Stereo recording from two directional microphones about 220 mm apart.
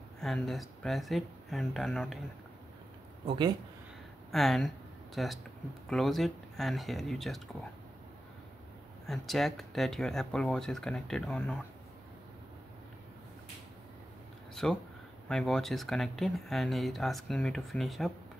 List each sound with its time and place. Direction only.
0.2 s speech: centre (ahead or behind)
3.3 s speech: 20° right (ahead or behind)
4.3 s speech: centre (ahead or behind)
9.0 s speech: centre (ahead or behind)
14.5 s a sound: centre (ahead or behind)
15.2 s speech: centre (ahead or behind)